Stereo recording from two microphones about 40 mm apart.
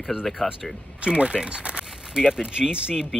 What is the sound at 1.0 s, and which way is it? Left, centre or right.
Speech, right.